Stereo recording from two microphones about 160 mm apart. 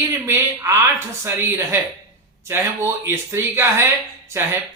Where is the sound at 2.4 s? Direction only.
15° right (ahead or behind).